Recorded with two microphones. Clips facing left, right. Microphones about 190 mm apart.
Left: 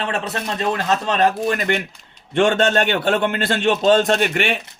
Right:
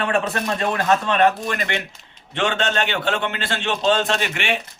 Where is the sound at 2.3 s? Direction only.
50° left (ahead or behind).